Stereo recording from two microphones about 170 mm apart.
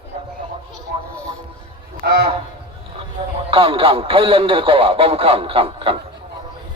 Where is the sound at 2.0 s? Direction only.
70° right (ahead or behind).